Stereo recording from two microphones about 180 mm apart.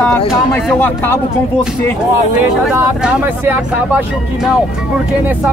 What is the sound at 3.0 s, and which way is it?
Speech, 5° right (ahead or behind).